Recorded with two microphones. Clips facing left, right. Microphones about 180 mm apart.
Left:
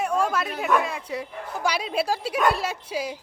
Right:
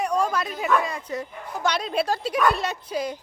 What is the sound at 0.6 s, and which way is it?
Speech, 5° left (ahead or behind).